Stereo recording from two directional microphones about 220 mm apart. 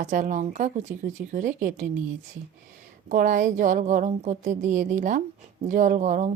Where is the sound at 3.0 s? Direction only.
35° right (ahead or behind).